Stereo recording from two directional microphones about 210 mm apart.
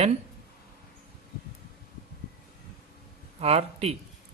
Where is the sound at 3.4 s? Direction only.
30° right (ahead or behind).